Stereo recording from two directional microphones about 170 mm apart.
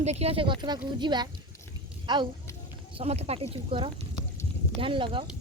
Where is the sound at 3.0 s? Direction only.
40° right (ahead or behind).